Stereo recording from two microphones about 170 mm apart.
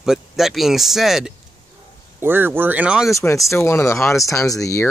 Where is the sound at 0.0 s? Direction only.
Centre (ahead or behind).